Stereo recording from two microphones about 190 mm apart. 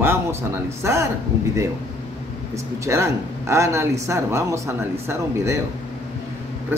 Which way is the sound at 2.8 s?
15° right (ahead or behind).